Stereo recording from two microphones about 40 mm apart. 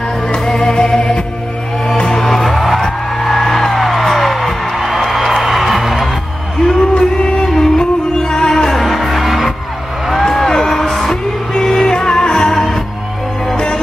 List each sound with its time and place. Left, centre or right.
0.3 s music: centre
2.1 s music: centre
6.7 s music: centre
8.6 s music: centre
12.5 s music: centre